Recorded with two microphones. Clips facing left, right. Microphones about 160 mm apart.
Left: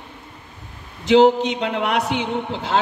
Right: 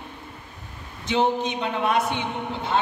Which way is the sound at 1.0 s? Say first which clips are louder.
Left 9 dB; 90° left.